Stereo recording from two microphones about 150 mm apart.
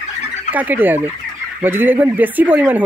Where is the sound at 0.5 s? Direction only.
10° right (ahead or behind).